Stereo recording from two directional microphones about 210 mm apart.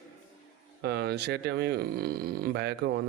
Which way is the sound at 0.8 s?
50° right (ahead or behind).